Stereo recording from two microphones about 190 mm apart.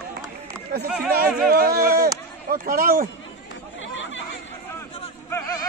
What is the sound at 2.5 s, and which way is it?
Speech, 50° right (ahead or behind).